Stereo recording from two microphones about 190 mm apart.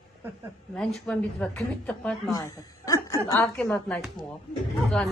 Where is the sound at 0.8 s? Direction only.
Centre (ahead or behind).